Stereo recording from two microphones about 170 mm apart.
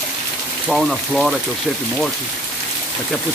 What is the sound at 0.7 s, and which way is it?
Speech, centre (ahead or behind).